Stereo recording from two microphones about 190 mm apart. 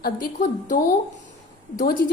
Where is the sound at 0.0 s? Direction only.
45° left (ahead or behind).